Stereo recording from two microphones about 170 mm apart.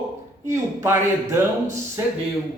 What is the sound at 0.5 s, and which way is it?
Speech, 15° right (ahead or behind).